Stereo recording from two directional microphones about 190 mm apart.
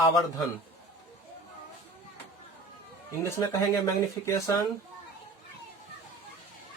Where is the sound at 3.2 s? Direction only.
15° left (ahead or behind).